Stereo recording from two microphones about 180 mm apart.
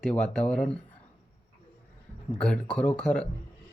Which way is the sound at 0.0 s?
5° left (ahead or behind).